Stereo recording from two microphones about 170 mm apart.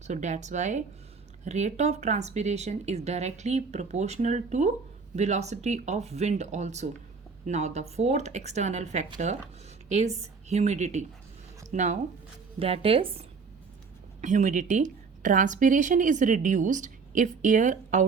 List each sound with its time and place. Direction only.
0.1 s a woman's voice: 45° right (ahead or behind)
14.2 s a woman's voice: 45° right (ahead or behind)